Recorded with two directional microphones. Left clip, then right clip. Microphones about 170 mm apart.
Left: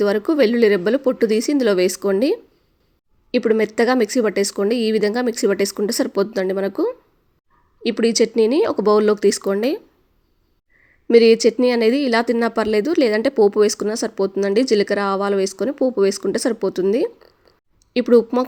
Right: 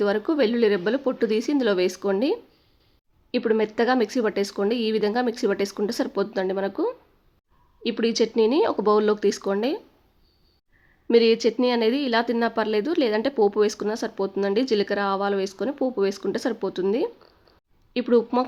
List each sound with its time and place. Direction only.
0.0 s speech: 15° left (ahead or behind)
11.1 s speech: 20° left (ahead or behind)